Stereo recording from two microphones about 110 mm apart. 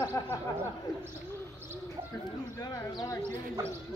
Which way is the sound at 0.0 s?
20° left (ahead or behind).